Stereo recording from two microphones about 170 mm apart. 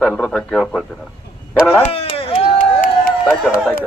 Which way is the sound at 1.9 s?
35° left (ahead or behind).